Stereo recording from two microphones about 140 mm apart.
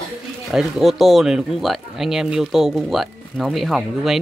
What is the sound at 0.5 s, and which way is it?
Speech, centre (ahead or behind).